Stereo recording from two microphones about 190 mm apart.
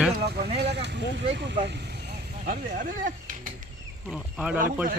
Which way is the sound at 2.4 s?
45° right (ahead or behind).